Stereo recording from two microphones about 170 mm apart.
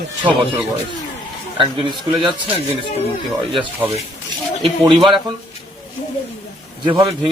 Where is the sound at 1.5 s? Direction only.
30° right (ahead or behind).